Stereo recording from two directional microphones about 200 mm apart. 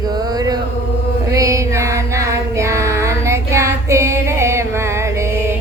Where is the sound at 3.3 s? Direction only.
15° right (ahead or behind).